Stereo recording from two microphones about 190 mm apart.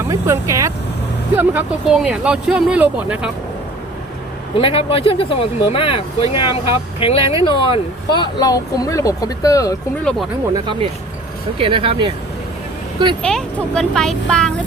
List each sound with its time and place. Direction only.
0.1 s speech: 15° right (ahead or behind)
4.5 s speech: 30° left (ahead or behind)
10.0 s speech: 5° left (ahead or behind)
10.5 s speech: 25° right (ahead or behind)
13.2 s speech: 5° left (ahead or behind)